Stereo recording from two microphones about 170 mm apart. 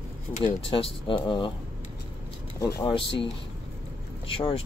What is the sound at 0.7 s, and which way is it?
Speech, 30° left (ahead or behind).